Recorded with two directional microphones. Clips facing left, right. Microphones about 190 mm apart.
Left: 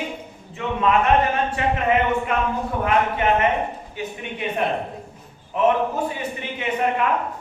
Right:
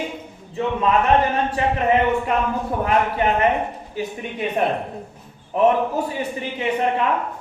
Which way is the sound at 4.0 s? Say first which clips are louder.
Right 4 dB; 35° right (ahead or behind).